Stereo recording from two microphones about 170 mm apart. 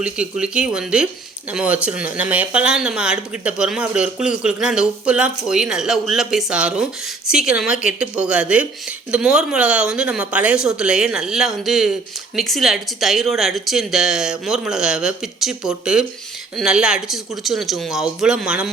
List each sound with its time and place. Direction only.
0.0 s speech: 5° right (ahead or behind)